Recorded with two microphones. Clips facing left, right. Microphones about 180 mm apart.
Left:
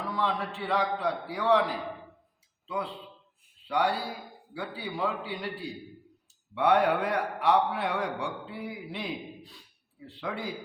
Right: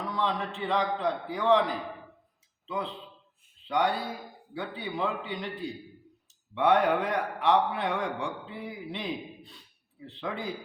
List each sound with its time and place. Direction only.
0.0 s a man's voice: 5° left (ahead or behind)